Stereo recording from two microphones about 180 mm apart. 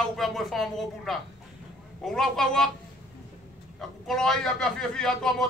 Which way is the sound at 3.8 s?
Centre (ahead or behind).